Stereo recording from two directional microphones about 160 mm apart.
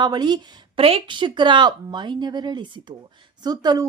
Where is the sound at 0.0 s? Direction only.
25° right (ahead or behind).